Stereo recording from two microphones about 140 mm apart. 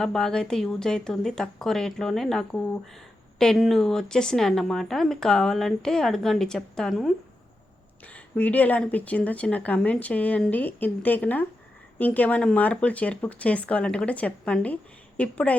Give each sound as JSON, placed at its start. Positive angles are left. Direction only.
{"t": 0.0, "sound": "a woman's voice", "side_deg": 5}